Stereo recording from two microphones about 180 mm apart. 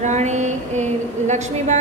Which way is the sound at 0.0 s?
40° right (ahead or behind).